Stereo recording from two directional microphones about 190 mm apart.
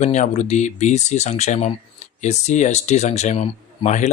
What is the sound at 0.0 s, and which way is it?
Speech, 35° left (ahead or behind).